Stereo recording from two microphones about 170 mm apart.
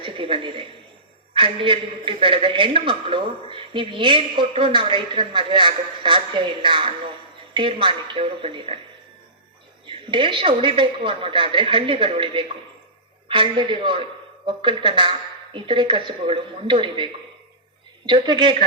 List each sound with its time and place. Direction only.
0.0 s a woman's voice: 30° right (ahead or behind)
9.8 s a woman's voice: 30° right (ahead or behind)